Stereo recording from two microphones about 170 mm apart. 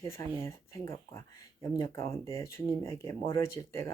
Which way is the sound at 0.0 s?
15° left (ahead or behind).